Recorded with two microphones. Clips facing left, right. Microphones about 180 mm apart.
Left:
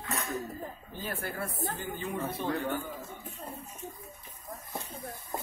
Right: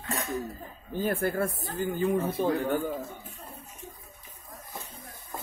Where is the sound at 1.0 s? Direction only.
50° right (ahead or behind).